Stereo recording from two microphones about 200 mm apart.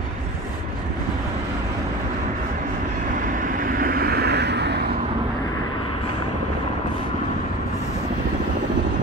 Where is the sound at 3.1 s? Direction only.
40° right (ahead or behind); by 4.9 s 55° right (ahead or behind).